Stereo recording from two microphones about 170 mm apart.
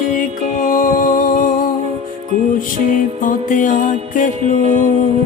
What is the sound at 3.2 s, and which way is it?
Music, 50° left (ahead or behind).